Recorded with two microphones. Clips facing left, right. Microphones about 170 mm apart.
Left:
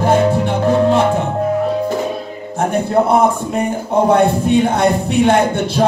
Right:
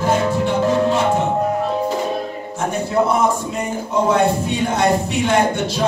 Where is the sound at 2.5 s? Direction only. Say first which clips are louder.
Left 5 dB; 55° left (ahead or behind).